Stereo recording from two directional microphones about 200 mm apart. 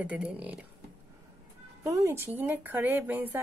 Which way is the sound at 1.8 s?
15° right (ahead or behind).